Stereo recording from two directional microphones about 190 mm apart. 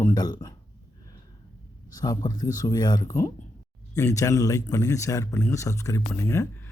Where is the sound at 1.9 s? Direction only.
20° left (ahead or behind).